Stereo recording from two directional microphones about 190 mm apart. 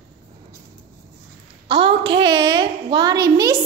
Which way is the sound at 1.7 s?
30° right (ahead or behind).